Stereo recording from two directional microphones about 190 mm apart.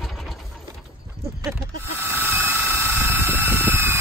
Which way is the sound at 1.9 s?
10° right (ahead or behind).